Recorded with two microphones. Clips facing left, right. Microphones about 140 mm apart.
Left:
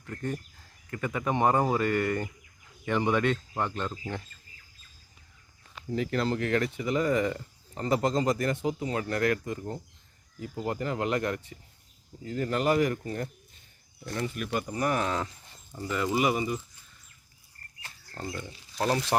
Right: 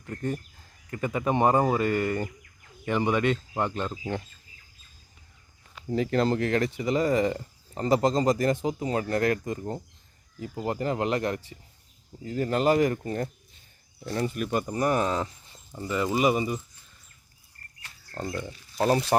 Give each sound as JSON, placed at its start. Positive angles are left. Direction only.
{"t": 0.9, "sound": "speech", "side_deg": -20}
{"t": 5.9, "sound": "speech", "side_deg": -35}
{"t": 18.1, "sound": "speech", "side_deg": -40}